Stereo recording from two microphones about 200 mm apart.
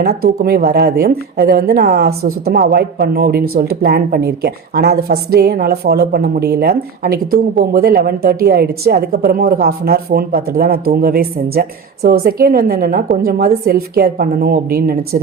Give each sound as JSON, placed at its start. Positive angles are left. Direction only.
{"t": 0.0, "sound": "a woman's voice", "side_deg": -50}